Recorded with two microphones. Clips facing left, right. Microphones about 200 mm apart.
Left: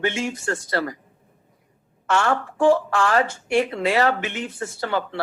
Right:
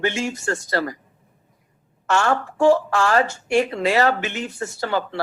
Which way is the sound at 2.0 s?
40° right (ahead or behind).